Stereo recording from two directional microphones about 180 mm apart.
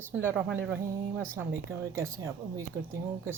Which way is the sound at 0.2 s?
15° right (ahead or behind).